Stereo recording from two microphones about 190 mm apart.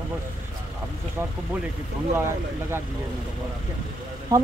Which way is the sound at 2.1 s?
15° right (ahead or behind).